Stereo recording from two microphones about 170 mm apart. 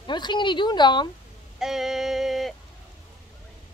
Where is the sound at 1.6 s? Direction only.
Centre (ahead or behind).